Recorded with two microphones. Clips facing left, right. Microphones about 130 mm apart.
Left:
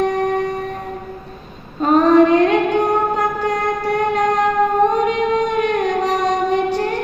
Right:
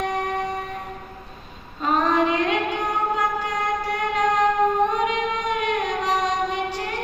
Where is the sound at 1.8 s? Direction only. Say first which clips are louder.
Left 9 dB; 50° left (ahead or behind).